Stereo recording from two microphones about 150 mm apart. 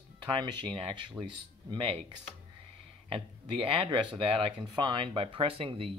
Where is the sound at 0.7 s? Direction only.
35° right (ahead or behind).